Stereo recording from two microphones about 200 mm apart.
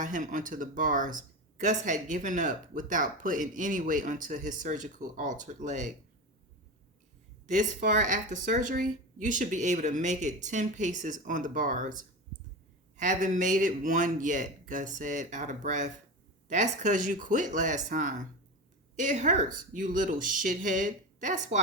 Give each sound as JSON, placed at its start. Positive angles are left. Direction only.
{"t": 0.0, "sound": "speech", "side_deg": -40}
{"t": 7.4, "sound": "speech", "side_deg": -40}